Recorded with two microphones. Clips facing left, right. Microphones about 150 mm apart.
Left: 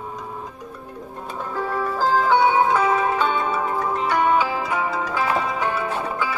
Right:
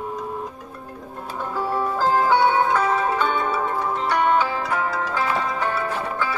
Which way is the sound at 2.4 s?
10° left (ahead or behind).